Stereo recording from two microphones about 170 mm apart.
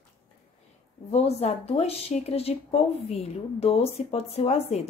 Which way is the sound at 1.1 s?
40° left (ahead or behind).